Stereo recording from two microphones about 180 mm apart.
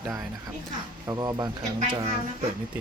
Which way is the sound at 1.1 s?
20° right (ahead or behind).